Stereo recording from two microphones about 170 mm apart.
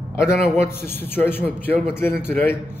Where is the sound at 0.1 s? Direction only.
15° left (ahead or behind).